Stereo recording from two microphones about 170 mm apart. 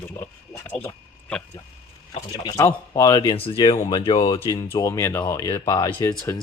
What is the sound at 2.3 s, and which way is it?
Speech, 25° left (ahead or behind).